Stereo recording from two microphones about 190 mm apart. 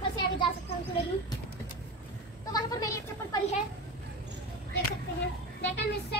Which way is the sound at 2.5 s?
20° left (ahead or behind).